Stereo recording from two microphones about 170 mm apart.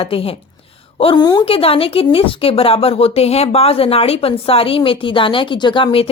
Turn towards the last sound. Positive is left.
turn(degrees=30)  # may be behind; listen again after turning